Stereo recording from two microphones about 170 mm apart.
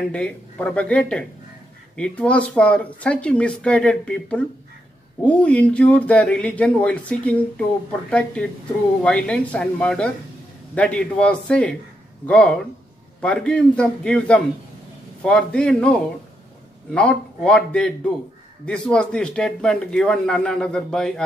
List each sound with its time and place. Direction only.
0.1 s a man's voice: 5° left (ahead or behind)